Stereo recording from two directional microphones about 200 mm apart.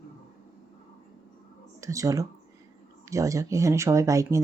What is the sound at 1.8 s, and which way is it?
Speech, 15° right (ahead or behind).